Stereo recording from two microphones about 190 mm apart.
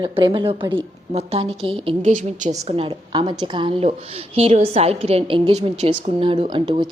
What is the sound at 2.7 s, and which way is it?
A woman's voice, 30° right (ahead or behind).